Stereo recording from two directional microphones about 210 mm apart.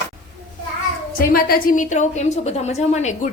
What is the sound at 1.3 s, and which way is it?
A woman's voice, 45° left (ahead or behind).